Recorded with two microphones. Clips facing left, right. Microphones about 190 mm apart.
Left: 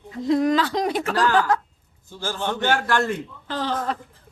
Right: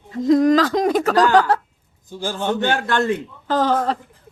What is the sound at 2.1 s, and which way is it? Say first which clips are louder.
A man's voice: right 4 dB; 15° right (ahead or behind).